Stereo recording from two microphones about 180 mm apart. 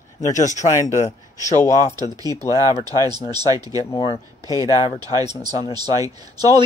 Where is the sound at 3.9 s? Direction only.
30° left (ahead or behind).